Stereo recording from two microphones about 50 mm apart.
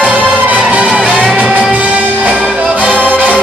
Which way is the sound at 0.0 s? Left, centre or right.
Right.